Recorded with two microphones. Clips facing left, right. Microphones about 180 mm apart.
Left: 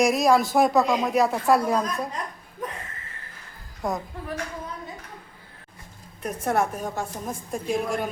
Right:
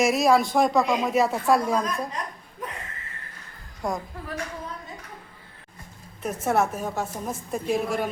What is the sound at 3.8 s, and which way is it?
Speech, centre (ahead or behind).